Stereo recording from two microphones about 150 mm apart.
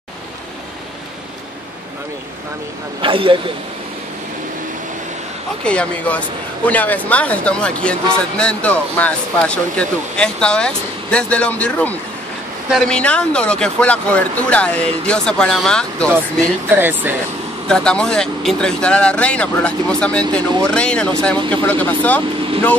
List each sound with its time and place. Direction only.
3.0 s a man's voice: 35° right (ahead or behind)
5.6 s speech: 5° left (ahead or behind)
16.7 s speech: 15° right (ahead or behind)
17.6 s speech: 5° left (ahead or behind)